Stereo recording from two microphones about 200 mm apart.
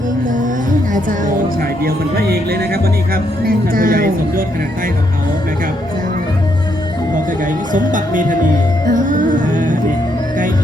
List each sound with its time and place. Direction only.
0.9 s music: 40° right (ahead or behind)
1.8 s speech: 50° right (ahead or behind)
7.7 s music: 40° right (ahead or behind)